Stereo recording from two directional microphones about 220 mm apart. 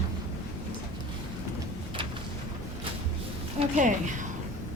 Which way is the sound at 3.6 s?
35° right (ahead or behind).